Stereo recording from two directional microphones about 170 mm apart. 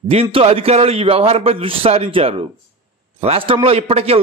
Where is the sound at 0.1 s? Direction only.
35° right (ahead or behind).